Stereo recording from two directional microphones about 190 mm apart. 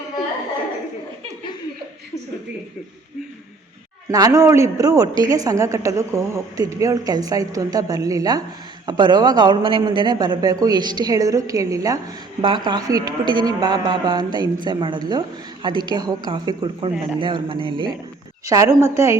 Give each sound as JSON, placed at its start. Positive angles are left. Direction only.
{"t": 4.1, "sound": "a woman's voice", "side_deg": -15}